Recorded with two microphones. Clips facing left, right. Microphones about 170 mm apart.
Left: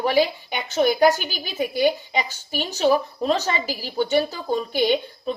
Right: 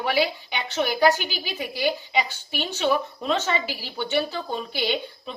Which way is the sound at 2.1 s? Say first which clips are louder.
Even; 40° left (ahead or behind).